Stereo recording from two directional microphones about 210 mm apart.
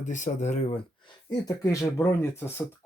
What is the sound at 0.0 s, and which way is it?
Speech, 35° left (ahead or behind).